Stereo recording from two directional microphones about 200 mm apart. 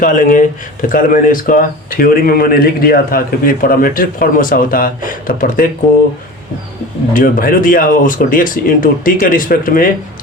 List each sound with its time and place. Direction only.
0.0 s speech: 40° left (ahead or behind)
7.1 s speech: 45° left (ahead or behind)